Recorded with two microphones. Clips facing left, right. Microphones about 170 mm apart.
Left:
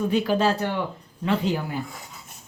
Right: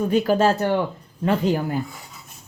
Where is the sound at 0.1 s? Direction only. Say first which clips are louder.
Right 5 dB; 45° right (ahead or behind).